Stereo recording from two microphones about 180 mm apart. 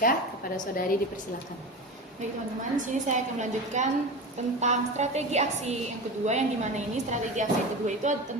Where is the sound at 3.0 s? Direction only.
40° right (ahead or behind).